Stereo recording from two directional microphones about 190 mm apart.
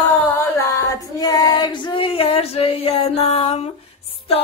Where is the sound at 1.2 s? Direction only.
20° left (ahead or behind).